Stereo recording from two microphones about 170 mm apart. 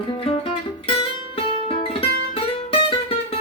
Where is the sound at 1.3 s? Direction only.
35° left (ahead or behind).